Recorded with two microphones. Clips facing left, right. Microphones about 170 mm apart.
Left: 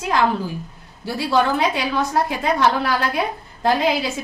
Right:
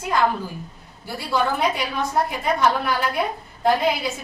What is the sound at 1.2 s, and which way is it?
A woman's voice, 90° left.